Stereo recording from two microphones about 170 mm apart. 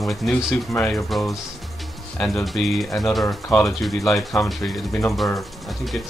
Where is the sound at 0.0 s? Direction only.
Centre (ahead or behind).